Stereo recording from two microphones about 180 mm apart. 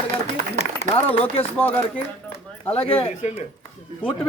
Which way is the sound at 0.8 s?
35° left (ahead or behind).